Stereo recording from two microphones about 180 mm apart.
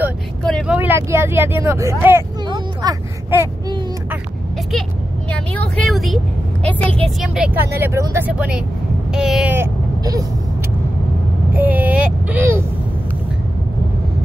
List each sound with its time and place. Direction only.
0.7 s speech: 10° right (ahead or behind)
2.4 s vehicle: 25° right (ahead or behind)
5.3 s a woman's voice: 5° left (ahead or behind)
7.3 s speech: 10° right (ahead or behind)
11.5 s child singing: 10° right (ahead or behind)